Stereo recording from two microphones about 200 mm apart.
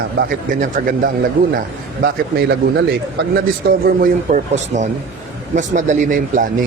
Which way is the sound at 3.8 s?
40° right (ahead or behind).